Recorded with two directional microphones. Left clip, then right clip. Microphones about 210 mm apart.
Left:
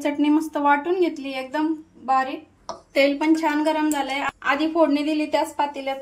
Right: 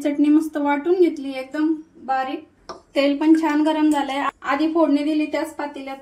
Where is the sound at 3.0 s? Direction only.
15° left (ahead or behind).